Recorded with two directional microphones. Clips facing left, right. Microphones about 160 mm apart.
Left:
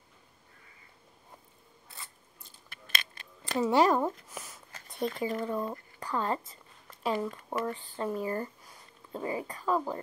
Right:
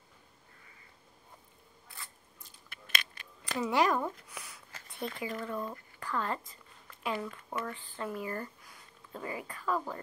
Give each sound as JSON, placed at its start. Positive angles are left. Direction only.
{"t": 2.7, "sound": "coin", "side_deg": 40}
{"t": 3.4, "sound": "a woman's voice", "side_deg": 30}
{"t": 4.3, "sound": "a sound", "side_deg": 40}
{"t": 7.2, "sound": "a woman's voice", "side_deg": 25}